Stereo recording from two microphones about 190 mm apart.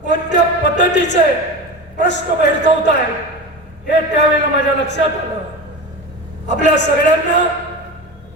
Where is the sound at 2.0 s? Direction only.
65° left (ahead or behind).